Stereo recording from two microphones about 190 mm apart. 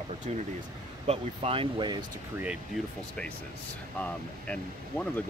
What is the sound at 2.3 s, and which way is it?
Speech, 5° right (ahead or behind).